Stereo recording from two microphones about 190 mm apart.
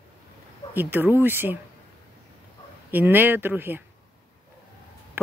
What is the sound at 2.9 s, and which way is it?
Speech, 10° right (ahead or behind).